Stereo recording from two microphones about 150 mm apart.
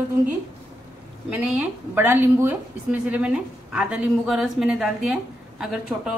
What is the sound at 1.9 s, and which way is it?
A woman's voice, 15° right (ahead or behind).